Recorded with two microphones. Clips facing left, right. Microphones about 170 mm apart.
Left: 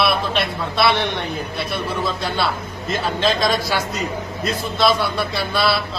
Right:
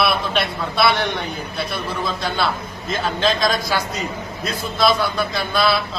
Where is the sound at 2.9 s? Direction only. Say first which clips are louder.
Even; centre (ahead or behind).